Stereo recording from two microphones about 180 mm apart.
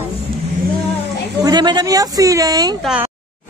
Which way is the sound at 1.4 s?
25° right (ahead or behind).